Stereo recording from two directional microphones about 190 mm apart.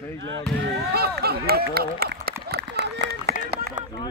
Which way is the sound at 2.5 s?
60° right (ahead or behind).